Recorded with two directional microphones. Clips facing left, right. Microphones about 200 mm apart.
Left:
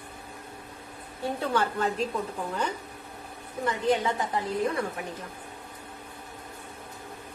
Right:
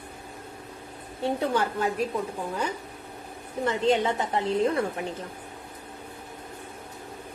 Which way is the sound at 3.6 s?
25° right (ahead or behind).